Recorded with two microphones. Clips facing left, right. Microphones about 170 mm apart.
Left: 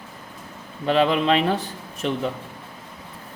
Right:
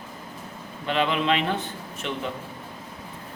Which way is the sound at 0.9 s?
35° left (ahead or behind).